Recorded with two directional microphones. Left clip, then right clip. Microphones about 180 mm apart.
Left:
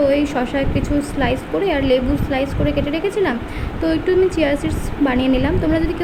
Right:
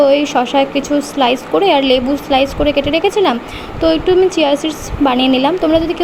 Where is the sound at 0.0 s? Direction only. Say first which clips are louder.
Right 6 dB; 15° right (ahead or behind).